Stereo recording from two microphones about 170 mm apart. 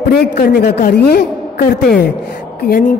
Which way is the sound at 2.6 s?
55° left (ahead or behind).